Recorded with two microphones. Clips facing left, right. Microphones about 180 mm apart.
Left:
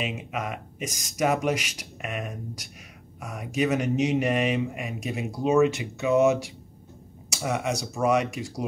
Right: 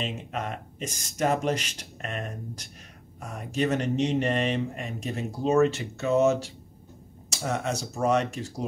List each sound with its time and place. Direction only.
0.0 s speech: 5° left (ahead or behind)